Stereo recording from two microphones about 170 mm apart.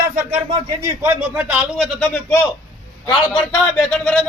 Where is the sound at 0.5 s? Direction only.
15° right (ahead or behind).